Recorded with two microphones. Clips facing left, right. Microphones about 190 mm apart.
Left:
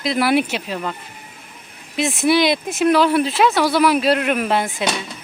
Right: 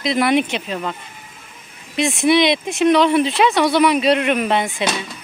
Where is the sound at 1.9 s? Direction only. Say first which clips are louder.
Right 1 dB; centre (ahead or behind).